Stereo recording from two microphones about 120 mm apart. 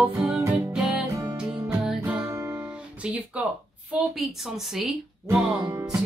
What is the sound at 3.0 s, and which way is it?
Speech, 10° right (ahead or behind).